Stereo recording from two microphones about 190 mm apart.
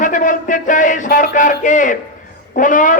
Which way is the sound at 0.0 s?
40° left (ahead or behind).